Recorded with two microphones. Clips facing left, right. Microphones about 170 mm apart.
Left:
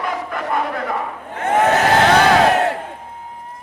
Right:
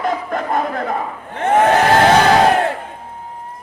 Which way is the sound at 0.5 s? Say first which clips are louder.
Right 1 dB; 40° right (ahead or behind).